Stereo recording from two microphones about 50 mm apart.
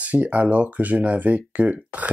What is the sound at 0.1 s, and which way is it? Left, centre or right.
Speech, right.